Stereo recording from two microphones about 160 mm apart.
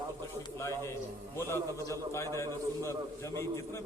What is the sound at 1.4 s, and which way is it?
A man's voice, 15° left (ahead or behind).